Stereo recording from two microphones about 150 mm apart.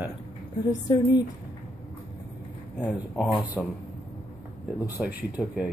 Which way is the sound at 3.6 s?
Centre (ahead or behind).